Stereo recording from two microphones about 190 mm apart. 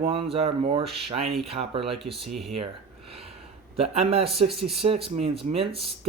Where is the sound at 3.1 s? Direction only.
30° right (ahead or behind).